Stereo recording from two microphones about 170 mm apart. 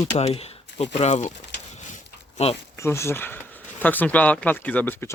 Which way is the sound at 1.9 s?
40° left (ahead or behind).